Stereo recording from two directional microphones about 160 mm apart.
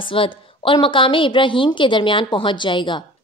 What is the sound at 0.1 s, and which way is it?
A woman's voice, 30° left (ahead or behind).